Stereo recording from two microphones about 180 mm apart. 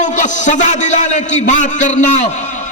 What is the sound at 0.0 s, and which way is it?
A man's voice, 45° left (ahead or behind).